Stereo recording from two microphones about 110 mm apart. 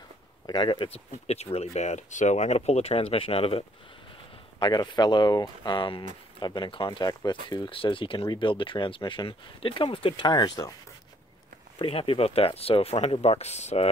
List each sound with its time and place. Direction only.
0.5 s speech: 45° left (ahead or behind)
0.8 s speech: 70° left (ahead or behind)
4.6 s speech: 40° left (ahead or behind)
11.8 s speech: 55° left (ahead or behind); by 13.8 s 85° left